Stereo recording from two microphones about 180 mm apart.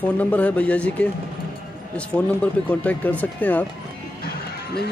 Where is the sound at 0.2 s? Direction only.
10° left (ahead or behind).